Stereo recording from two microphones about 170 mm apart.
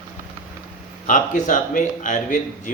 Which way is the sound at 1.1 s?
50° left (ahead or behind).